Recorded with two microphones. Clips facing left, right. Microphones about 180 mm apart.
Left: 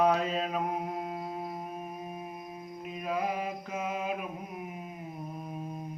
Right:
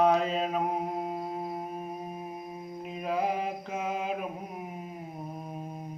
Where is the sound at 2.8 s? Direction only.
30° right (ahead or behind).